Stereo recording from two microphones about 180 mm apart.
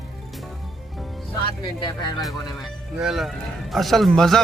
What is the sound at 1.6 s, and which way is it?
Speech, 25° left (ahead or behind).